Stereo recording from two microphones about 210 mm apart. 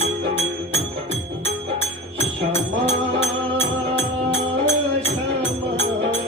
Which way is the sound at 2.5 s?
30° left (ahead or behind).